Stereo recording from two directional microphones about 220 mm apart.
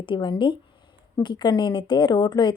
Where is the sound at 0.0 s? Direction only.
20° left (ahead or behind).